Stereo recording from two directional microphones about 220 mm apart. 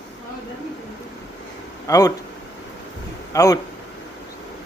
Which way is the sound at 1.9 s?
15° left (ahead or behind).